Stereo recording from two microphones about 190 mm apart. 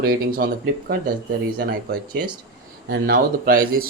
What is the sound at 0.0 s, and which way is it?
Speech, 50° right (ahead or behind).